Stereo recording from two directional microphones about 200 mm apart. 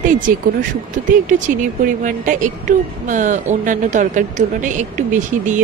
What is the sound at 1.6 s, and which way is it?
Speech, 40° right (ahead or behind).